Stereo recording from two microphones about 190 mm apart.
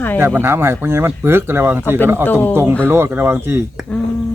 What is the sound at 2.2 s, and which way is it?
Speech, 10° left (ahead or behind).